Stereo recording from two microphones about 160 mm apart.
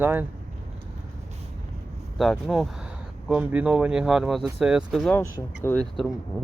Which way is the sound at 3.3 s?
10° right (ahead or behind).